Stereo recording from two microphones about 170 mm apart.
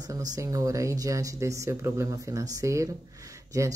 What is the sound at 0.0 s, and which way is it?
Speech, 20° right (ahead or behind).